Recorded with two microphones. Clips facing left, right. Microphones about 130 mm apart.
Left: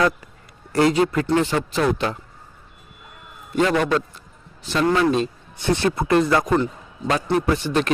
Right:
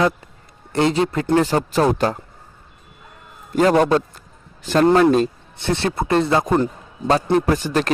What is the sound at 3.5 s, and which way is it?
A man's voice, 40° right (ahead or behind).